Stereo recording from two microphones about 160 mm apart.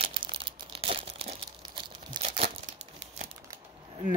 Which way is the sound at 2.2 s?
45° right (ahead or behind).